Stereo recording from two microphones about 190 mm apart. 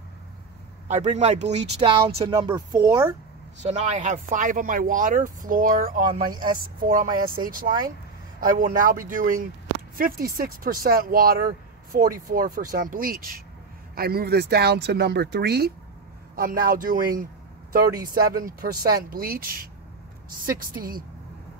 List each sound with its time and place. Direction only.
0.8 s speech: 35° right (ahead or behind); by 3.1 s 15° right (ahead or behind)
3.6 s speech: 40° right (ahead or behind); by 15.7 s 60° right (ahead or behind)
16.3 s speech: 45° right (ahead or behind)
18.0 s speech: 50° right (ahead or behind)